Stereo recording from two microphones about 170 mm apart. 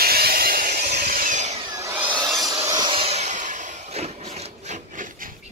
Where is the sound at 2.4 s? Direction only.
20° right (ahead or behind); by 3.4 s 40° right (ahead or behind).